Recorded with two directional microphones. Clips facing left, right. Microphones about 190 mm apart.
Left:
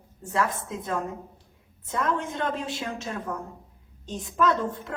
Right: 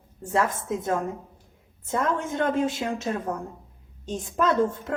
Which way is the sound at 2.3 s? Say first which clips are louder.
Right 6 dB; 45° right (ahead or behind).